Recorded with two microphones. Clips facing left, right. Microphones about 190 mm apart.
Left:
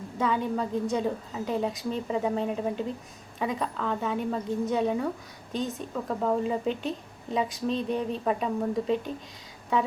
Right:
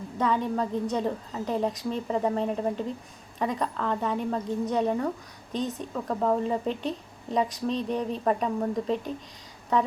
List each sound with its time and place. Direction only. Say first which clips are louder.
0.2 s speech: right 1 dB; centre (ahead or behind)
9.7 s speech: right 1 dB; centre (ahead or behind)